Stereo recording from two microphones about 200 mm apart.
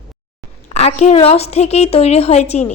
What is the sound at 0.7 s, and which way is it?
A woman's voice, 30° left (ahead or behind).